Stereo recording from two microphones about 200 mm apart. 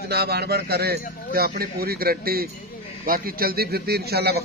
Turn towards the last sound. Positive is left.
turn(degrees=-55)  # may be behind; listen again after turning